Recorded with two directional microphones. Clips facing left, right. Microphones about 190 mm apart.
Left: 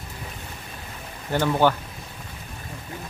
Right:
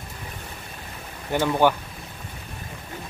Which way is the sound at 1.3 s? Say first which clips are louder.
Even; 15° right (ahead or behind).